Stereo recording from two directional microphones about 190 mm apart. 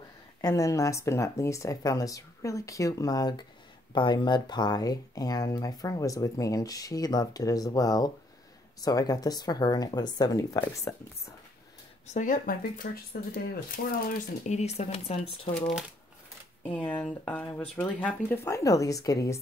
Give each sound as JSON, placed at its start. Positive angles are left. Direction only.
{"t": 0.4, "sound": "speech", "side_deg": 15}
{"t": 12.1, "sound": "speech", "side_deg": 40}
{"t": 14.4, "sound": "speech", "side_deg": 35}
{"t": 16.6, "sound": "speech", "side_deg": 5}